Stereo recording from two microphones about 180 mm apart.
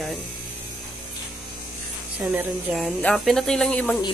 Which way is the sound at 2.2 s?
10° right (ahead or behind).